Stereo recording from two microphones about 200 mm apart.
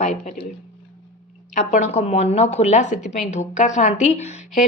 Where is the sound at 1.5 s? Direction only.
35° left (ahead or behind).